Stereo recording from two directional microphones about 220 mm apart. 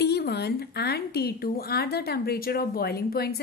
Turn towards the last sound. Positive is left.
turn(degrees=45)  # may be behind; listen again after turning